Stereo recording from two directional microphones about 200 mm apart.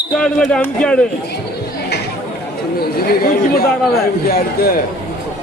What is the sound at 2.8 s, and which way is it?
Speech, 50° left (ahead or behind).